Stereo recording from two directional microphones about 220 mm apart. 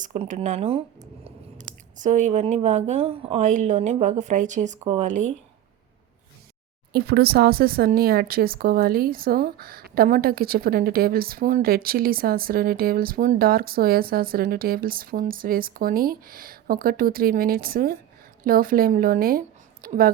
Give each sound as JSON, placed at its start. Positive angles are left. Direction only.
{"t": 0.0, "sound": "speech", "side_deg": -35}
{"t": 6.9, "sound": "speech", "side_deg": -45}